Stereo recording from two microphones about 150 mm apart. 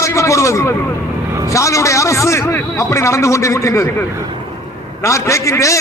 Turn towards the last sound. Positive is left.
turn(degrees=20)  # may be behind; listen again after turning